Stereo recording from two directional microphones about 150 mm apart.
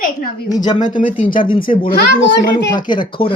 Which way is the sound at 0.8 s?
55° left (ahead or behind).